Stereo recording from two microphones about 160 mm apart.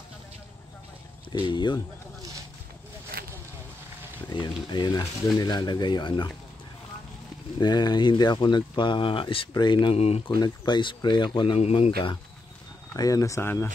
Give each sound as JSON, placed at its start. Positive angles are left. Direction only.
{"t": 1.4, "sound": "speech", "side_deg": 30}
{"t": 4.3, "sound": "speech", "side_deg": 30}
{"t": 7.5, "sound": "speech", "side_deg": 25}
{"t": 9.9, "sound": "speech", "side_deg": 40}
{"t": 10.4, "sound": "speech", "side_deg": 25}
{"t": 12.9, "sound": "speech", "side_deg": 20}